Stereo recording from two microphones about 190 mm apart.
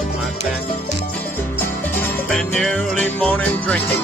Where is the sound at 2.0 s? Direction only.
5° left (ahead or behind).